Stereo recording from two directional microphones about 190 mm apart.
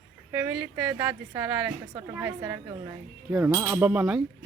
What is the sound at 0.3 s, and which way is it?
A woman's voice, 10° right (ahead or behind).